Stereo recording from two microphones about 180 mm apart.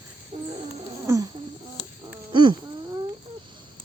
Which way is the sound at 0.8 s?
20° right (ahead or behind).